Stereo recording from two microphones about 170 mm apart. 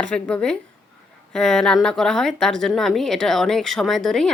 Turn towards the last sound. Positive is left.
turn(degrees=0)  # may be behind; listen again after turning